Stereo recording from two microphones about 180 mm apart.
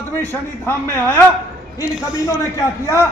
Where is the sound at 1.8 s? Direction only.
20° left (ahead or behind).